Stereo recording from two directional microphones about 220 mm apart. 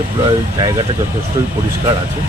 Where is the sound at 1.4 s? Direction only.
15° right (ahead or behind).